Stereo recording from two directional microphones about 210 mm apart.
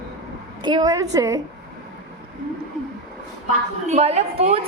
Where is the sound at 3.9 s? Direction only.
30° right (ahead or behind).